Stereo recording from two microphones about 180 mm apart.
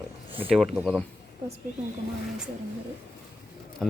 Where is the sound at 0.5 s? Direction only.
Centre (ahead or behind).